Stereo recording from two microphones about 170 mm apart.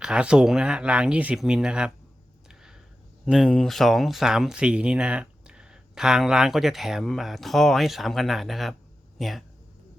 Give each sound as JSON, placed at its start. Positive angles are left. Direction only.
{"t": 0.0, "sound": "speech", "side_deg": -5}
{"t": 3.2, "sound": "speech", "side_deg": 0}